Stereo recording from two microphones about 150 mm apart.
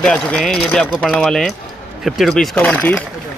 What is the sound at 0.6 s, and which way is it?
Speech, 10° left (ahead or behind).